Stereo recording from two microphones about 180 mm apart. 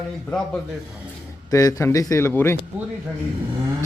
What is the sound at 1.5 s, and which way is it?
A man's voice, 20° left (ahead or behind).